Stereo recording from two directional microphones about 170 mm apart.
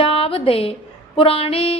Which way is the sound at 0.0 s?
35° left (ahead or behind).